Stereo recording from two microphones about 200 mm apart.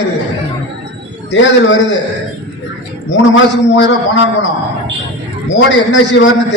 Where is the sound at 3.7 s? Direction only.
65° left (ahead or behind).